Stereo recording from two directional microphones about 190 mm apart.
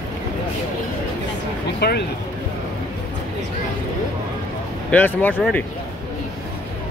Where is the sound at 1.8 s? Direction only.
55° left (ahead or behind).